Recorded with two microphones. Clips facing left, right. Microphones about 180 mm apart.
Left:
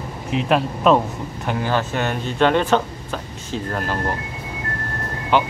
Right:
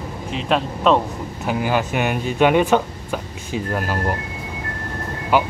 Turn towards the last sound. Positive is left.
turn(degrees=-10)  # may be behind; listen again after turning